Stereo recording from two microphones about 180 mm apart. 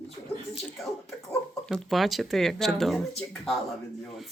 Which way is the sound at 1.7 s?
Centre (ahead or behind).